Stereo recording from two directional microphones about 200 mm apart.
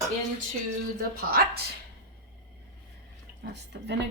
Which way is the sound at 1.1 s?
50° right (ahead or behind).